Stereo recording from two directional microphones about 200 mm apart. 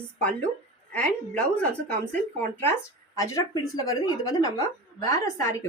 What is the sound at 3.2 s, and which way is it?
A woman's voice, 15° left (ahead or behind).